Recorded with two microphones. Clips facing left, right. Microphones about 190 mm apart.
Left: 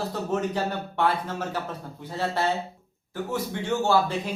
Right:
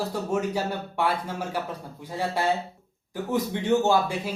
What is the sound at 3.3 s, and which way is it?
Speech, 20° right (ahead or behind).